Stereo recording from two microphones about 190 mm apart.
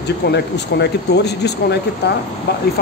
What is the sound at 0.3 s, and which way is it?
Speech, 60° left (ahead or behind).